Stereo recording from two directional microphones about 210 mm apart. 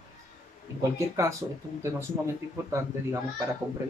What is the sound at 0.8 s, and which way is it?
Speech, 15° right (ahead or behind).